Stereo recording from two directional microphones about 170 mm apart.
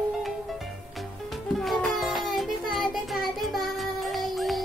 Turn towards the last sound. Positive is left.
turn(degrees=0)  # may be behind; listen again after turning